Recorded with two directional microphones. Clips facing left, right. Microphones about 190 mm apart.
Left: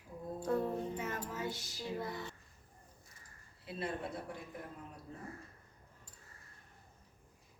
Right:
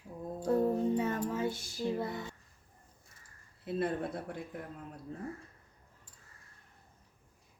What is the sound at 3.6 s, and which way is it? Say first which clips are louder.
Speech: right 8 dB; 50° right (ahead or behind).